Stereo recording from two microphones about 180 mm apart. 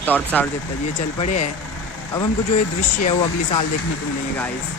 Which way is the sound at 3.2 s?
25° left (ahead or behind).